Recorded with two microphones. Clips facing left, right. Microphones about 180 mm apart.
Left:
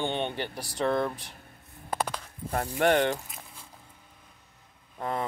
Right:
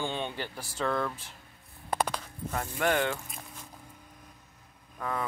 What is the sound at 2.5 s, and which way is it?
Speech, 35° left (ahead or behind).